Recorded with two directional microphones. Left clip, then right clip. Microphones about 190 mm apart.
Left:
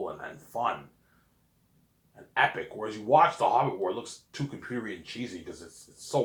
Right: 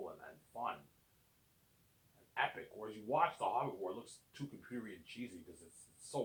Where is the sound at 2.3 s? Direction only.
35° left (ahead or behind).